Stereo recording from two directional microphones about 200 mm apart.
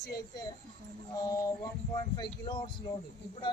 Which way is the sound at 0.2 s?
20° left (ahead or behind).